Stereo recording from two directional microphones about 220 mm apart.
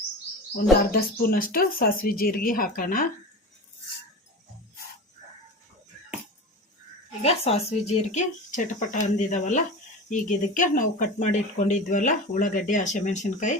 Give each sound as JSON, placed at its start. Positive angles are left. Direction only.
{"t": 0.5, "sound": "speech", "side_deg": 40}
{"t": 7.2, "sound": "speech", "side_deg": 30}